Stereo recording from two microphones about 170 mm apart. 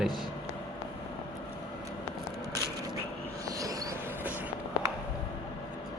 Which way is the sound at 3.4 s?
20° right (ahead or behind).